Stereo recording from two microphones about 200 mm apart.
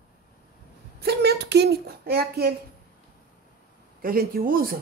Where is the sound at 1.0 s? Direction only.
55° right (ahead or behind).